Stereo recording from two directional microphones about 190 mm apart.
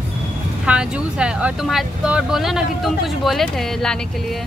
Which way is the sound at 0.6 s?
5° right (ahead or behind).